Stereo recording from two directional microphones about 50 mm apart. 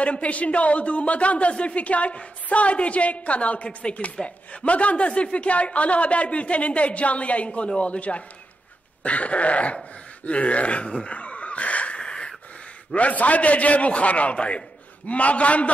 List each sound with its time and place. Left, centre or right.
0.0 s speech: left
10.2 s a sound: left
12.0 s wheeze: centre
12.9 s speech: left